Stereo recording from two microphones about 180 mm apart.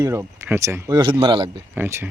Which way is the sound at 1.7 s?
10° right (ahead or behind).